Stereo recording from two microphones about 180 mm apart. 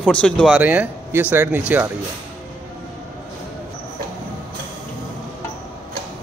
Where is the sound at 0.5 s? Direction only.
10° right (ahead or behind).